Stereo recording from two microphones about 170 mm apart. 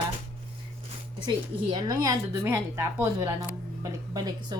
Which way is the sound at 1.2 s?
25° right (ahead or behind).